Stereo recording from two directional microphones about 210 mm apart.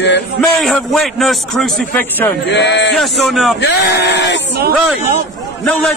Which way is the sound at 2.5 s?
55° left (ahead or behind).